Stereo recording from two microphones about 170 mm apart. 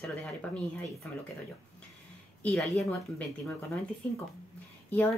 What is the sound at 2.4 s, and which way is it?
A woman's voice, 5° left (ahead or behind).